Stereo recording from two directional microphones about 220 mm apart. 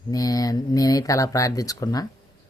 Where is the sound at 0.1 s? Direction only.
15° left (ahead or behind).